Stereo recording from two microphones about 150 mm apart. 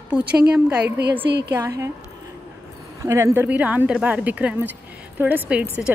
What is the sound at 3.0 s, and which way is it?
Speech, 15° right (ahead or behind).